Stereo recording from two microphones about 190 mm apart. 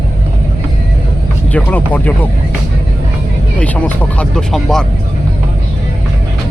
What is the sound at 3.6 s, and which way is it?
Speech, 5° left (ahead or behind).